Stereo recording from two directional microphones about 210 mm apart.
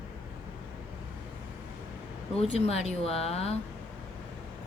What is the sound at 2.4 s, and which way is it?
Speech, 30° left (ahead or behind).